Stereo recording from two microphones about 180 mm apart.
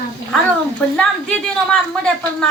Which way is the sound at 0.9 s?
5° left (ahead or behind).